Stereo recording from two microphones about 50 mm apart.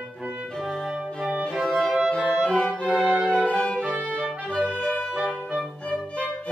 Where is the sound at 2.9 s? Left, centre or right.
Right.